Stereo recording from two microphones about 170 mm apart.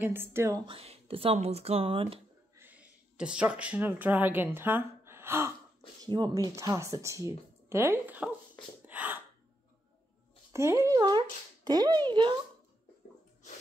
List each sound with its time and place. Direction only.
0.0 s speech: 15° right (ahead or behind)
0.7 s speech: 35° right (ahead or behind)
2.5 s speech: 10° right (ahead or behind)
6.0 s speech: 25° right (ahead or behind)
8.8 s sneeze: 10° right (ahead or behind)
10.5 s speech: 15° right (ahead or behind)